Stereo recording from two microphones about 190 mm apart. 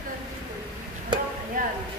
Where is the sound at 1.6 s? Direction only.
45° right (ahead or behind).